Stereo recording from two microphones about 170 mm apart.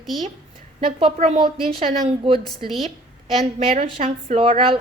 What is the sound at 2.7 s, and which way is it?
Speech, centre (ahead or behind).